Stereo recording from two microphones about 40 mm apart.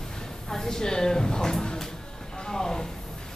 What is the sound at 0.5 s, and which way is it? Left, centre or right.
Speech, centre.